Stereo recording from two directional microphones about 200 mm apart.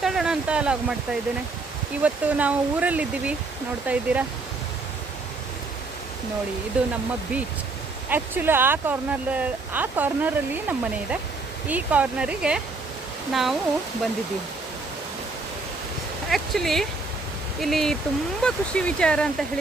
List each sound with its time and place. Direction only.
0.0 s speech: centre (ahead or behind)
2.0 s speech: 5° right (ahead or behind)
6.8 s speech: 5° right (ahead or behind)
8.1 s speech: 10° right (ahead or behind)
16.3 s speech: centre (ahead or behind)